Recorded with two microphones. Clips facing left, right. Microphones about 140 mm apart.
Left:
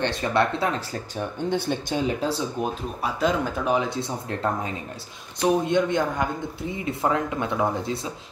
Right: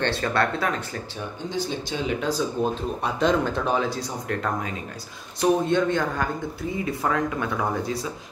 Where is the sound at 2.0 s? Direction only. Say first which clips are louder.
Right 3 dB; 30° left (ahead or behind).